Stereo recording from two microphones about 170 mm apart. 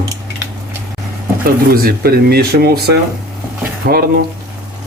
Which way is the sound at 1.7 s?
65° right (ahead or behind).